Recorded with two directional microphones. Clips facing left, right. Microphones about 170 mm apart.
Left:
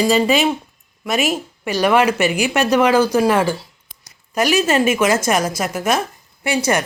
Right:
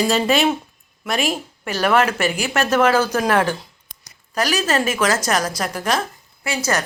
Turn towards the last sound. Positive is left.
turn(degrees=15)  # may be behind; listen again after turning